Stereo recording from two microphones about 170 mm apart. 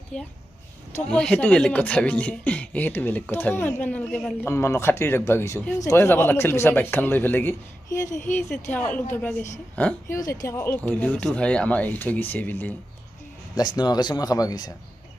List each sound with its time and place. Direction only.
0.1 s a woman's voice: 5° left (ahead or behind)
13.7 s speech: 25° left (ahead or behind)